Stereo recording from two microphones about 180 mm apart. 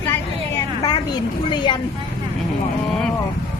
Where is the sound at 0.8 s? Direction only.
25° left (ahead or behind).